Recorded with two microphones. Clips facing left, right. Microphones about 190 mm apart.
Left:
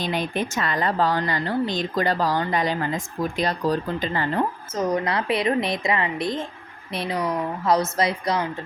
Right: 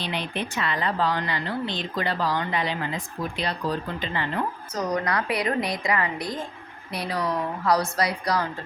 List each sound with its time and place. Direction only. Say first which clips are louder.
0.0 s speech: left 4 dB; 45° left (ahead or behind)
4.7 s a woman's voice: left 1 dB; 25° left (ahead or behind)